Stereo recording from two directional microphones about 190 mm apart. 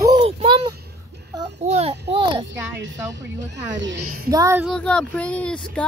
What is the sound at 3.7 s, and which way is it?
Speech, 70° right (ahead or behind).